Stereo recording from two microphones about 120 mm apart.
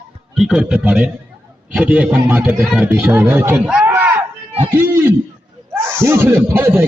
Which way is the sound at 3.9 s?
15° right (ahead or behind).